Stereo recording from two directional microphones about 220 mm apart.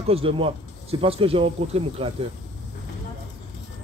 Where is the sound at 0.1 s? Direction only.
25° right (ahead or behind).